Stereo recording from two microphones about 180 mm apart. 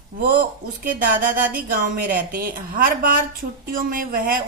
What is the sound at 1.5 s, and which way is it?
Speech, 50° right (ahead or behind).